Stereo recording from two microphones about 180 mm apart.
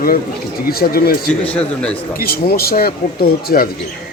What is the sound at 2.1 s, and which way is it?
Speech, 55° left (ahead or behind).